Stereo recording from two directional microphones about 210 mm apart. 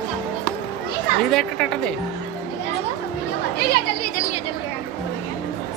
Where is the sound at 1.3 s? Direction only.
Centre (ahead or behind).